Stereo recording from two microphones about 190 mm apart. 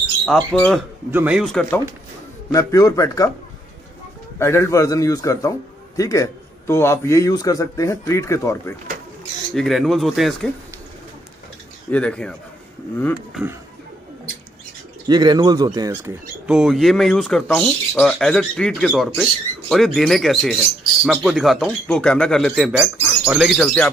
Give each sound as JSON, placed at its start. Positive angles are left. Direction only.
{"t": 0.2, "sound": "speech", "side_deg": 5}
{"t": 2.5, "sound": "a man's voice", "side_deg": 15}
{"t": 4.4, "sound": "a man's voice", "side_deg": 15}
{"t": 9.5, "sound": "speech", "side_deg": 0}
{"t": 11.9, "sound": "speech", "side_deg": 5}
{"t": 13.3, "sound": "speech", "side_deg": -5}
{"t": 15.0, "sound": "speech", "side_deg": -20}
{"t": 16.4, "sound": "speech", "side_deg": -5}